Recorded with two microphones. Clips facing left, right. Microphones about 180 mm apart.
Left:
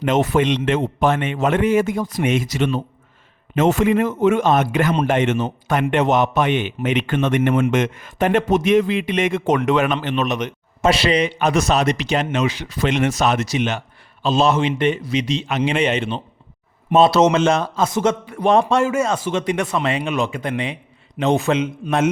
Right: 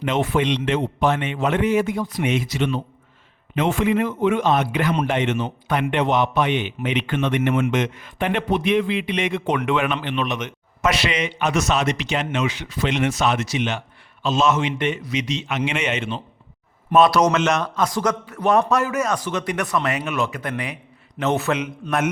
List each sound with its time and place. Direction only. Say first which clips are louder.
0.0 s a man's voice: left 4 dB; 45° left (ahead or behind); by 18.2 s 25° left (ahead or behind)
18.3 s a man's voice: left 3 dB; 15° left (ahead or behind)
18.7 s a man's voice: left 3 dB; 25° left (ahead or behind)